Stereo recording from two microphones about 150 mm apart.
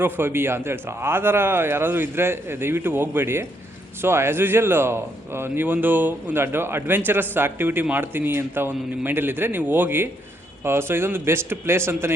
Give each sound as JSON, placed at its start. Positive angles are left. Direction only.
{"t": 0.0, "sound": "speech", "side_deg": -15}